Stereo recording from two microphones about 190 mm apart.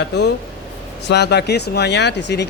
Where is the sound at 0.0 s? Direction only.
65° left (ahead or behind).